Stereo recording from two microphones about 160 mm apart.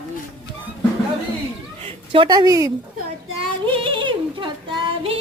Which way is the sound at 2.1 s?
30° right (ahead or behind).